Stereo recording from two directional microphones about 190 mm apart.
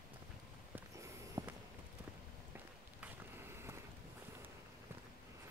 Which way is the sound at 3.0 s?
10° right (ahead or behind).